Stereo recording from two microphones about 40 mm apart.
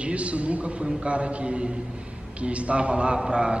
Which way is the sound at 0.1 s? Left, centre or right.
Right.